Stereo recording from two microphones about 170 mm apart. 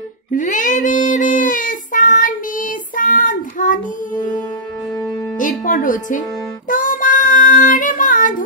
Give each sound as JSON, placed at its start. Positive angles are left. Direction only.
{"t": 0.3, "sound": "child singing", "side_deg": 50}
{"t": 5.4, "sound": "music", "side_deg": 50}
{"t": 6.7, "sound": "child singing", "side_deg": 50}